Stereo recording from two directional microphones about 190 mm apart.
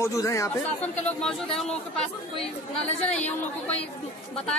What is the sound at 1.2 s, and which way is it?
Speech, 5° left (ahead or behind).